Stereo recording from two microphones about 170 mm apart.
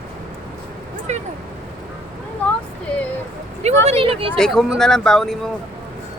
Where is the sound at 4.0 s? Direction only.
35° right (ahead or behind).